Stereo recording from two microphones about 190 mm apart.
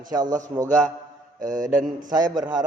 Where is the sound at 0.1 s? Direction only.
20° right (ahead or behind).